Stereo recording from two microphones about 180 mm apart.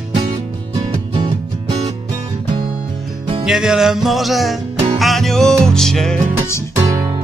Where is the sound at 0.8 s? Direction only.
25° right (ahead or behind).